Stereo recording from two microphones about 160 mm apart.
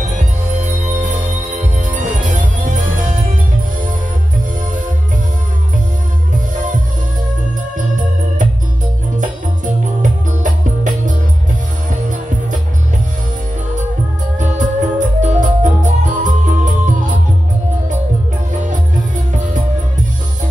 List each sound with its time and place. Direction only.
0.0 s music: 50° right (ahead or behind)
7.7 s music: 50° right (ahead or behind)
10.4 s music: 50° right (ahead or behind)
14.4 s music: 50° right (ahead or behind)
18.7 s music: 50° right (ahead or behind)